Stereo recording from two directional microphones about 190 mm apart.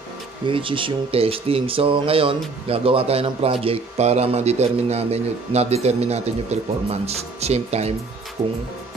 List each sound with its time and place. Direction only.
0.5 s a man's voice: 25° right (ahead or behind)